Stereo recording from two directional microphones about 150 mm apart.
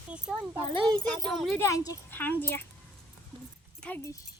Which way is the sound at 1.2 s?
Centre (ahead or behind).